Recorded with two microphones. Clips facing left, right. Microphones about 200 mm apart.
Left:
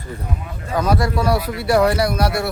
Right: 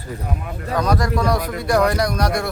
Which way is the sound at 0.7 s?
5° left (ahead or behind).